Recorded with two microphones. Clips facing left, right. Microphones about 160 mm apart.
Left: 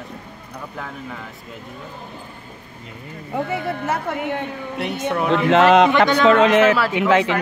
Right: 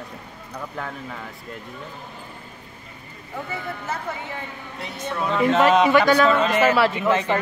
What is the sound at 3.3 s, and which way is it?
A woman's voice, 65° left (ahead or behind).